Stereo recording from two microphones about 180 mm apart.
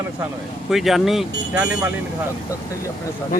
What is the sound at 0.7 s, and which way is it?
Speech, centre (ahead or behind).